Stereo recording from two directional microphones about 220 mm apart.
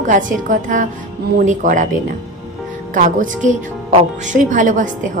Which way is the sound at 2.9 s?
35° right (ahead or behind).